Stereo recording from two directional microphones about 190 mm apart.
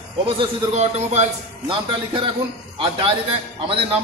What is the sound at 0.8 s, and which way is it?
Speech, 35° right (ahead or behind).